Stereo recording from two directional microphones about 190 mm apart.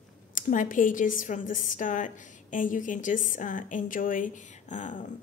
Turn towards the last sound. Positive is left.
turn(degrees=40)  # may be behind; listen again after turning